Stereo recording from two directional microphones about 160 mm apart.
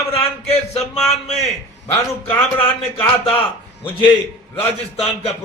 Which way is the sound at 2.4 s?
15° left (ahead or behind).